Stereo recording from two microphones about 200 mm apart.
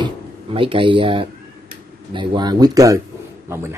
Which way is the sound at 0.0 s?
25° right (ahead or behind).